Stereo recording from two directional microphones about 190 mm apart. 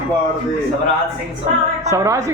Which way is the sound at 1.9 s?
15° right (ahead or behind).